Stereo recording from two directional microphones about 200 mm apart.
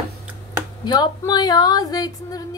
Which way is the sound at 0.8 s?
20° left (ahead or behind).